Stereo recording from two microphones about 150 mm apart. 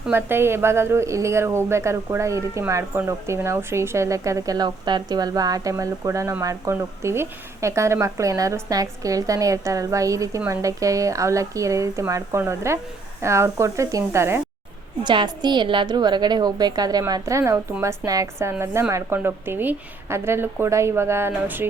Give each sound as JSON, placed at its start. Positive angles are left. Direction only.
{"t": 0.0, "sound": "a woman's voice", "side_deg": -15}
{"t": 15.0, "sound": "a woman's voice", "side_deg": -30}